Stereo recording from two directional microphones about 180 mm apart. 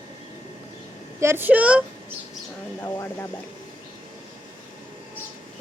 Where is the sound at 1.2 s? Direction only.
15° right (ahead or behind).